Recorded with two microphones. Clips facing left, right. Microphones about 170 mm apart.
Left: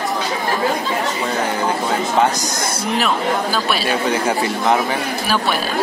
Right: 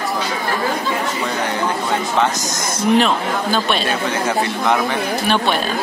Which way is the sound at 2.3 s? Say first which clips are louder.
Left 1 dB; 10° left (ahead or behind).